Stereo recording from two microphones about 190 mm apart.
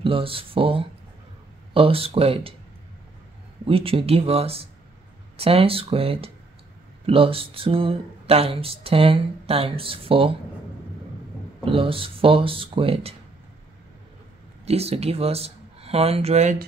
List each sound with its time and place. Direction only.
0.0 s speech: 30° right (ahead or behind)
3.6 s speech: 30° right (ahead or behind)
11.6 s speech: 30° right (ahead or behind)
14.7 s speech: 35° right (ahead or behind)